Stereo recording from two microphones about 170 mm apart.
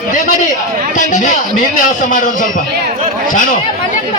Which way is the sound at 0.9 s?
50° left (ahead or behind).